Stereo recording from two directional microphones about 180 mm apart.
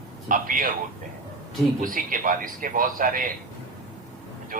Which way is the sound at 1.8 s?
50° right (ahead or behind).